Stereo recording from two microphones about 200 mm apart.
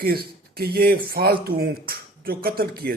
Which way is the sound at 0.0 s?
50° right (ahead or behind).